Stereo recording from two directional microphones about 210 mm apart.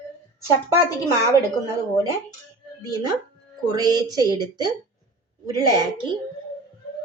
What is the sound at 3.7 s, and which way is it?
Speech, 20° right (ahead or behind).